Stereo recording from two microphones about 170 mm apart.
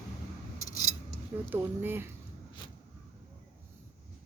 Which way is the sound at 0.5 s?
20° left (ahead or behind).